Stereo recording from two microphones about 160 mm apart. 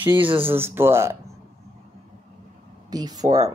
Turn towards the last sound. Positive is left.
turn(degrees=-25)  # may be behind; listen again after turning